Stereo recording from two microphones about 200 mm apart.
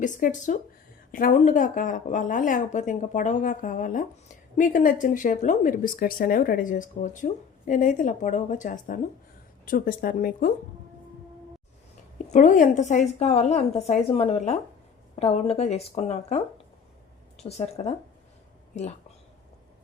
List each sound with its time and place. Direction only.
0.0 s speech: 40° left (ahead or behind)
12.3 s speech: 40° left (ahead or behind)
17.6 s speech: 30° left (ahead or behind)